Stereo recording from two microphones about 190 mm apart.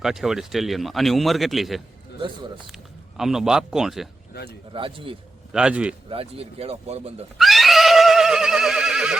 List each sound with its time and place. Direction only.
0.0 s speech: centre (ahead or behind)
4.3 s speech: 60° left (ahead or behind)
4.7 s a man's voice: 25° right (ahead or behind)
5.5 s a man's voice: 5° right (ahead or behind)
6.1 s speech: 30° right (ahead or behind)
7.3 s neigh: centre (ahead or behind)